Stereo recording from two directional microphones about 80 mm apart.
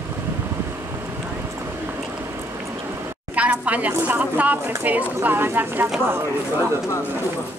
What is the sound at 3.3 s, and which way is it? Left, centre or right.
Speech, centre.